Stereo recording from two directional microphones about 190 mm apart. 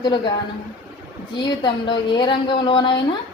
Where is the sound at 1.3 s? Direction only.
25° left (ahead or behind).